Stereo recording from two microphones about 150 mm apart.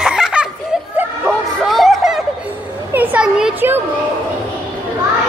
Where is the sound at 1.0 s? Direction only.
5° right (ahead or behind).